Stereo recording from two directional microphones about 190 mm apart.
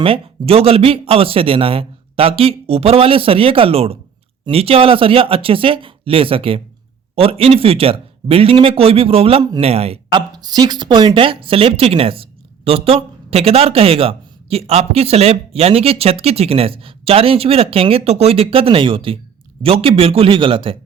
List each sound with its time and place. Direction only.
0.0 s speech: 30° right (ahead or behind)